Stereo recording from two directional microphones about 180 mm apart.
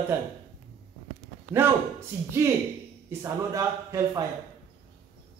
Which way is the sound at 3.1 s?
15° right (ahead or behind).